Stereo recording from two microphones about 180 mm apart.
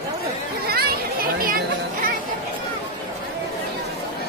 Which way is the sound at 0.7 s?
60° right (ahead or behind).